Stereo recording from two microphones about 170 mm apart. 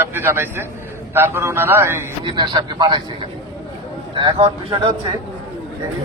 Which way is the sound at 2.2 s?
25° right (ahead or behind).